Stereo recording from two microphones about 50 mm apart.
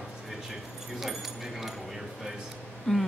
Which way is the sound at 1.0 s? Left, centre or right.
Centre.